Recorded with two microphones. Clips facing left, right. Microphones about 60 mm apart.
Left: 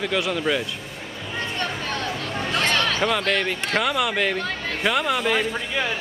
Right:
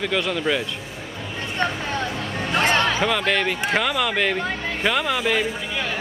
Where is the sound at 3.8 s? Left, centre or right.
Centre.